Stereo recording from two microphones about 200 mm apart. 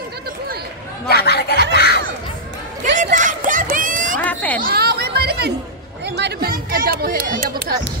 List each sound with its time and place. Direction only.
1.0 s speech: 55° left (ahead or behind)
1.8 s children playing: 55° left (ahead or behind)
3.0 s a sound: 40° right (ahead or behind)
4.2 s cat: 5° left (ahead or behind)
4.6 s chatter: 50° right (ahead or behind)